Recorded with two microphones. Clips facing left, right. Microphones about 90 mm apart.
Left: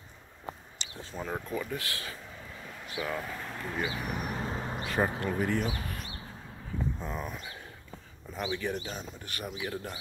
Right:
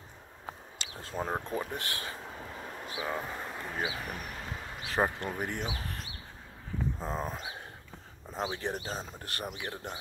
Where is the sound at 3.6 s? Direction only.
5° right (ahead or behind).